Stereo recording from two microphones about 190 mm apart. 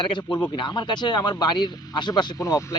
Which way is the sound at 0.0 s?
25° left (ahead or behind).